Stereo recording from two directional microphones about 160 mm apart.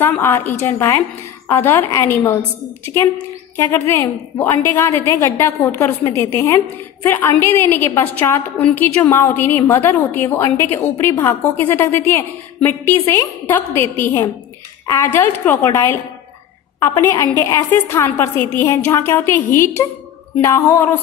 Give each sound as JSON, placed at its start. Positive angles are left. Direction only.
{"t": 0.0, "sound": "a woman's voice", "side_deg": 15}
{"t": 3.5, "sound": "a woman's voice", "side_deg": 15}
{"t": 15.1, "sound": "a woman's voice", "side_deg": 15}